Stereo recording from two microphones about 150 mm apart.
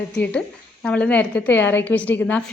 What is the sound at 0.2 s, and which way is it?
A woman's voice, 5° left (ahead or behind).